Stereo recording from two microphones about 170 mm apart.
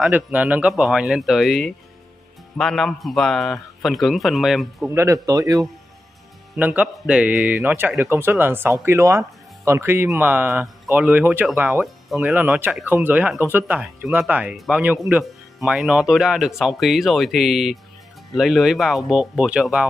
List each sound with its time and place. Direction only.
0.0 s speech: 10° right (ahead or behind)
4.8 s speech: 15° right (ahead or behind)
6.5 s speech: 10° right (ahead or behind)